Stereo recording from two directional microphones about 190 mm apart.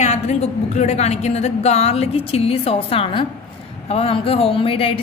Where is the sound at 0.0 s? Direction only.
35° left (ahead or behind).